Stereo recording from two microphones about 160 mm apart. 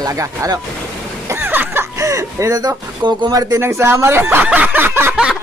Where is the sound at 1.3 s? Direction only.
10° right (ahead or behind).